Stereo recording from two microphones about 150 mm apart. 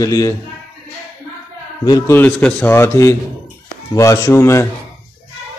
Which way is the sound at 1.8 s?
25° left (ahead or behind).